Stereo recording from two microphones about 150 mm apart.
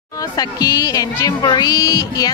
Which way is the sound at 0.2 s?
25° left (ahead or behind).